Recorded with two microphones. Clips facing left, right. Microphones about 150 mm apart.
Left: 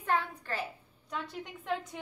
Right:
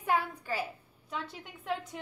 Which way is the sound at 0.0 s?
10° right (ahead or behind).